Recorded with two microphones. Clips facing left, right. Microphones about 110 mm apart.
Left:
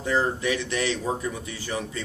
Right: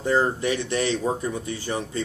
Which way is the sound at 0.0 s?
35° right (ahead or behind).